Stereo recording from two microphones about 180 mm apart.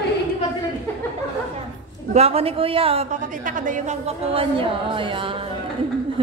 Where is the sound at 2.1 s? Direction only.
35° right (ahead or behind).